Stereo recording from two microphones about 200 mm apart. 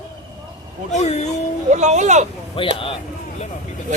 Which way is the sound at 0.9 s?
35° left (ahead or behind).